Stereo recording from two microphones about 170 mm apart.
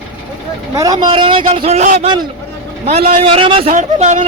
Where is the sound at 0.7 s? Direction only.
20° right (ahead or behind); by 2.0 s 45° right (ahead or behind).